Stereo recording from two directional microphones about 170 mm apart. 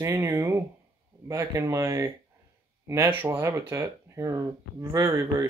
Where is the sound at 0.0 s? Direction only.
15° right (ahead or behind).